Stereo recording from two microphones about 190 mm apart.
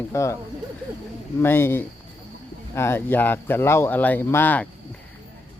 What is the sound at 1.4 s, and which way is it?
A man's voice, 10° left (ahead or behind).